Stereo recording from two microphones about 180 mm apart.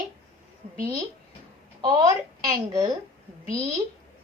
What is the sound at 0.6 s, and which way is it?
Speech, 40° right (ahead or behind).